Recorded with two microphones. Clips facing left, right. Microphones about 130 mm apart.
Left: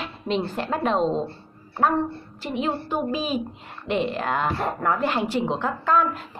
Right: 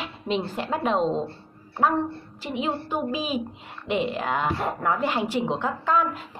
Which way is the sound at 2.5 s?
10° right (ahead or behind).